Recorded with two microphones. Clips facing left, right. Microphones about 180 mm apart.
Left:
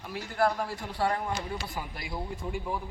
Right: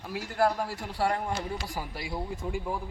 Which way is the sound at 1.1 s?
35° right (ahead or behind).